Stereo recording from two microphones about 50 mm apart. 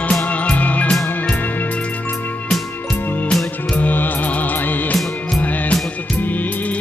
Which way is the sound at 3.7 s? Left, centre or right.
Left.